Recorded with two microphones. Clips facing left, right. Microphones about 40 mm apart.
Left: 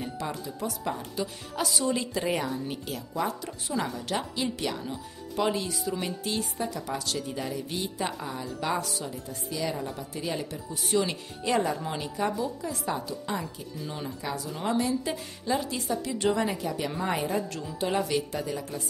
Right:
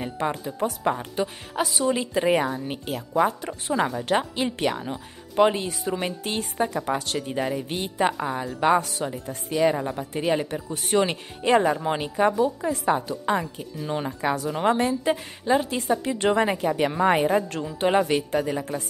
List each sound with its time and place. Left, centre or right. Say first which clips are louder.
0.0 s a woman's voice: right 6 dB; right